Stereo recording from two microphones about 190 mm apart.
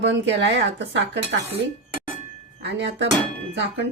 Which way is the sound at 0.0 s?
70° right (ahead or behind).